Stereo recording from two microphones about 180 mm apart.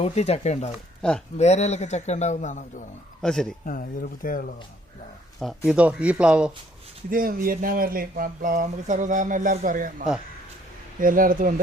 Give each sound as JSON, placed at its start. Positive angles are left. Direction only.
{"t": 0.0, "sound": "a man's voice", "side_deg": 35}
{"t": 1.0, "sound": "speech", "side_deg": 5}
{"t": 1.4, "sound": "a man's voice", "side_deg": 40}
{"t": 3.2, "sound": "speech", "side_deg": 5}
{"t": 3.7, "sound": "speech", "side_deg": 50}
{"t": 5.4, "sound": "speech", "side_deg": 0}
{"t": 7.1, "sound": "speech", "side_deg": -50}